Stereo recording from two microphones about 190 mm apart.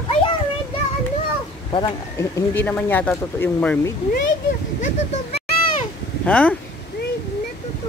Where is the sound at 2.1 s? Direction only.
10° left (ahead or behind).